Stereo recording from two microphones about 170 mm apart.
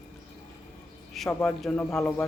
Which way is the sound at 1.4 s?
5° left (ahead or behind).